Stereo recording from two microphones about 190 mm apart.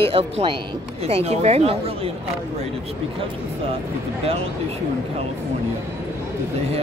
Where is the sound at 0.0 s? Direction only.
30° right (ahead or behind).